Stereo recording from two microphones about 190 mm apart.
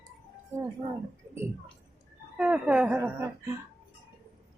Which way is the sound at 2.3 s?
5° right (ahead or behind).